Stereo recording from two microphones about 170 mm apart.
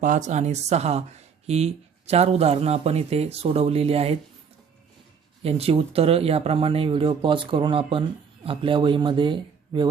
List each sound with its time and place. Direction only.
0.0 s speech: 50° right (ahead or behind)
5.4 s speech: 35° right (ahead or behind)